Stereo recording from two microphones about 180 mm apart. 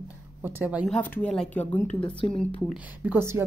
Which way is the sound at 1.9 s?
30° left (ahead or behind).